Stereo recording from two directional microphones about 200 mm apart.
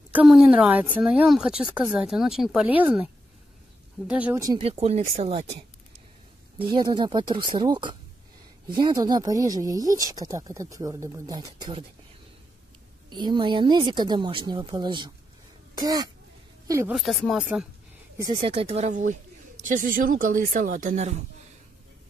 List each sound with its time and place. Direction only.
0.1 s speech: 5° right (ahead or behind)
4.1 s speech: 10° right (ahead or behind)
4.6 s speech: 30° right (ahead or behind)
6.7 s speech: 20° right (ahead or behind)
13.1 s a woman's voice: 20° right (ahead or behind)
16.9 s speech: centre (ahead or behind)
18.3 s speech: 30° right (ahead or behind)